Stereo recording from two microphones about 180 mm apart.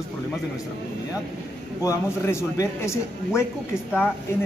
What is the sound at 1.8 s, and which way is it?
A man's voice, 15° left (ahead or behind).